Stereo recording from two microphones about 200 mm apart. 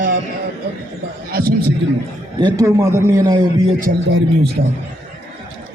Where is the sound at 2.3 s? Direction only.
20° right (ahead or behind).